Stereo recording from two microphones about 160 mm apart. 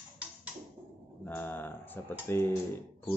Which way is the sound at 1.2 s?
15° left (ahead or behind).